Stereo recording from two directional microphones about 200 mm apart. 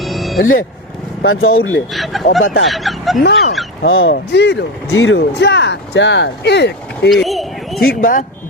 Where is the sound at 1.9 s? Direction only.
Centre (ahead or behind).